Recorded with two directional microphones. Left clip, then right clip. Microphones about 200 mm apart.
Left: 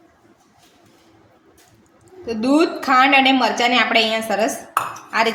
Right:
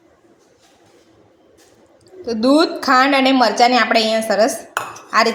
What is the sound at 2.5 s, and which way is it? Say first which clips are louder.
A woman's voice: right 2 dB; 25° right (ahead or behind).